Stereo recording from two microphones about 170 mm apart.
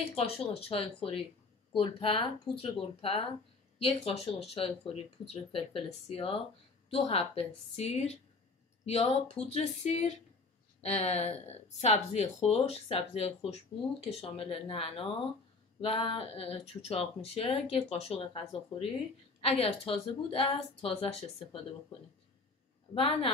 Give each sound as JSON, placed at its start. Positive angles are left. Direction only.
{"t": 0.0, "sound": "speech", "side_deg": 35}
{"t": 22.9, "sound": "speech", "side_deg": 35}